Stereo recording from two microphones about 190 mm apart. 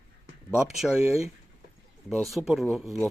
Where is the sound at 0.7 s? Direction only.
5° right (ahead or behind).